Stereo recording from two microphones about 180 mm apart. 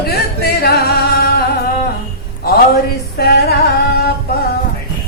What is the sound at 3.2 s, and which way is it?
Music, 60° left (ahead or behind).